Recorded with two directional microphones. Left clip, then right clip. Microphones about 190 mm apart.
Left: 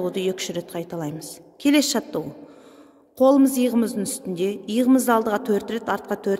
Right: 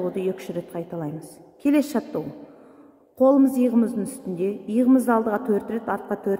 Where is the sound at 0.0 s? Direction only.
10° left (ahead or behind).